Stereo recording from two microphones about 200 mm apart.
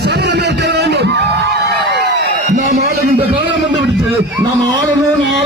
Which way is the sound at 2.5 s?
45° right (ahead or behind).